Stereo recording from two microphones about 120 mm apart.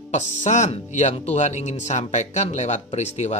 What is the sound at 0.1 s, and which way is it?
Speech, 80° left.